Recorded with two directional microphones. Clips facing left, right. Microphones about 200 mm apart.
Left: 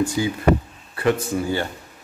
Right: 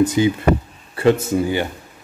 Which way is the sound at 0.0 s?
20° right (ahead or behind).